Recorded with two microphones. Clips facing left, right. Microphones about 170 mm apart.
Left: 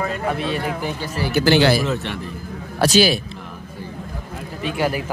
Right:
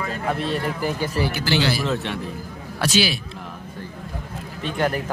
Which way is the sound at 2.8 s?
40° left (ahead or behind).